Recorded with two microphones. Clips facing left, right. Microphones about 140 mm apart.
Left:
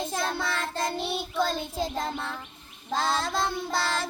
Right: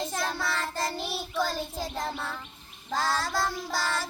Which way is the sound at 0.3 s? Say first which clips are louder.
Left 1 dB; 20° left (ahead or behind).